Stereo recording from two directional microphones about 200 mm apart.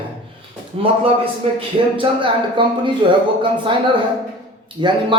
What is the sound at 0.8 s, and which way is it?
A man's voice, 30° right (ahead or behind).